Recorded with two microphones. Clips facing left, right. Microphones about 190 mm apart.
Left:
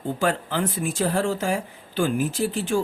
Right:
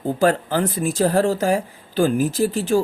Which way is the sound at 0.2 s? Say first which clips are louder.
Right 6 dB; 40° right (ahead or behind).